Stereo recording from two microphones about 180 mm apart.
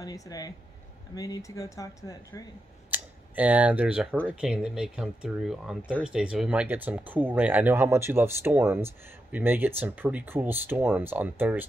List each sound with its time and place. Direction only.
0.0 s speech: 20° left (ahead or behind)
2.9 s speech: 10° right (ahead or behind)